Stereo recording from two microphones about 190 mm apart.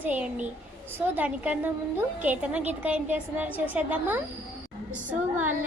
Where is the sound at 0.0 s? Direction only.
5° right (ahead or behind).